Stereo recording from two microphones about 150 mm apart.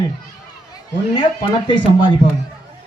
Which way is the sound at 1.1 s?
30° left (ahead or behind).